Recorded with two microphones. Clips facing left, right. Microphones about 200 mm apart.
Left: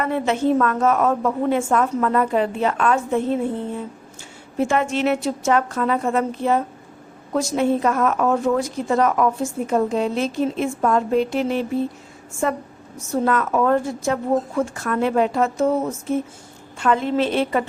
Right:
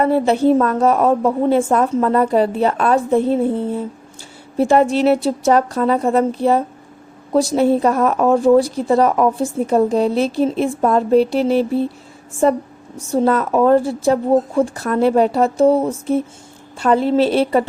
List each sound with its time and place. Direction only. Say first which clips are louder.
0.0 s a woman's voice: right 6 dB; 35° right (ahead or behind)